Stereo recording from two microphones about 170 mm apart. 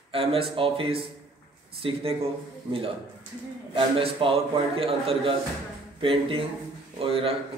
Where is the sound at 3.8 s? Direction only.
30° right (ahead or behind).